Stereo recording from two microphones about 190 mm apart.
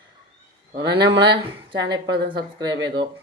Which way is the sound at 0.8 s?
60° right (ahead or behind).